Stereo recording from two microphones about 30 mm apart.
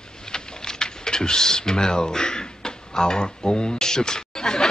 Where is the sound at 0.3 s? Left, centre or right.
Left.